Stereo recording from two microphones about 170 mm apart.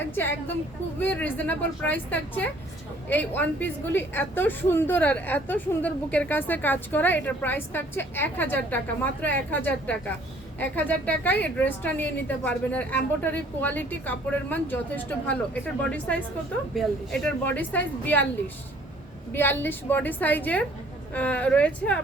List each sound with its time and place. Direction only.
0.0 s a woman's voice: 10° left (ahead or behind)
19.3 s a woman's voice: 10° left (ahead or behind)